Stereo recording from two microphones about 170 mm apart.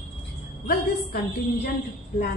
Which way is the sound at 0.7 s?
70° left (ahead or behind).